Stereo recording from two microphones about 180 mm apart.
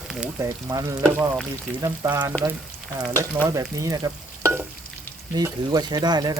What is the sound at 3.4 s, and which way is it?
Frying, 20° right (ahead or behind).